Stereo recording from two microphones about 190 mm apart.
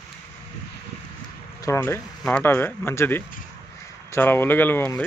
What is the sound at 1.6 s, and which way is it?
Speech, 15° left (ahead or behind).